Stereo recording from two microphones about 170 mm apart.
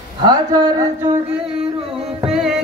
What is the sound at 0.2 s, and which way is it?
Speech, 25° right (ahead or behind).